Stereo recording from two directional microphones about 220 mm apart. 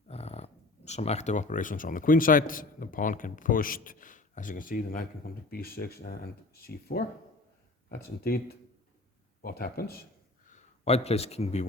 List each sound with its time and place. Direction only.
0.1 s speech: 30° left (ahead or behind)
10.5 s a man's voice: 30° left (ahead or behind)